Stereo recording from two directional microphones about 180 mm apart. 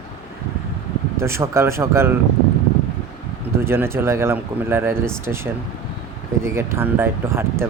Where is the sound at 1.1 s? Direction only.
15° right (ahead or behind).